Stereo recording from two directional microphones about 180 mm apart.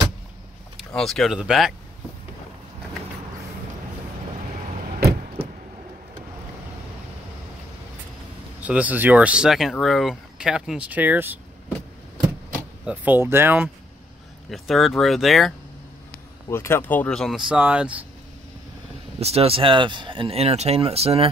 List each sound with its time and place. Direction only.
0.7 s speech: centre (ahead or behind)
8.5 s speech: 10° right (ahead or behind)
12.8 s speech: 10° right (ahead or behind)
14.5 s speech: centre (ahead or behind)
16.4 s speech: 15° left (ahead or behind); by 18.0 s 5° right (ahead or behind)
19.1 s speech: 35° right (ahead or behind)